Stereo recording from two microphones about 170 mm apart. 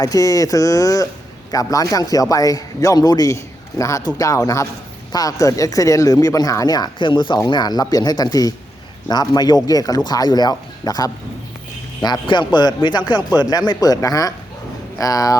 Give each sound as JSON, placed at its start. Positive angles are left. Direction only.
{"t": 0.0, "sound": "speech", "side_deg": 20}